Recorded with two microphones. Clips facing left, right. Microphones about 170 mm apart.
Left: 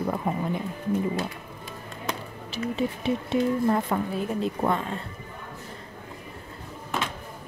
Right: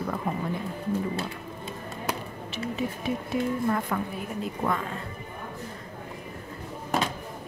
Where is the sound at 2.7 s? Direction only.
25° left (ahead or behind).